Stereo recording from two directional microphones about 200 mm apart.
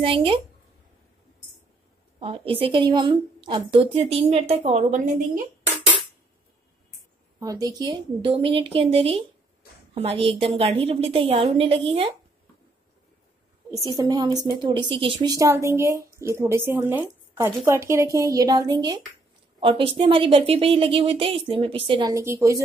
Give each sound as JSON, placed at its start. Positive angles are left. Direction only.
{"t": 0.0, "sound": "a woman's voice", "side_deg": -25}
{"t": 2.1, "sound": "a woman's voice", "side_deg": -25}
{"t": 7.3, "sound": "a woman's voice", "side_deg": -15}
{"t": 13.7, "sound": "a woman's voice", "side_deg": -20}